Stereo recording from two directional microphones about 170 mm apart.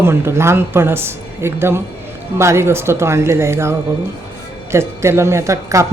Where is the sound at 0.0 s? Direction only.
15° right (ahead or behind).